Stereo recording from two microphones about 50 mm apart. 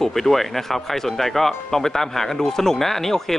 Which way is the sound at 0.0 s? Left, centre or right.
Centre.